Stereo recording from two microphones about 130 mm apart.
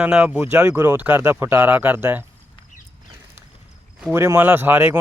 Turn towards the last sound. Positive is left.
turn(degrees=-15)  # may be behind; listen again after turning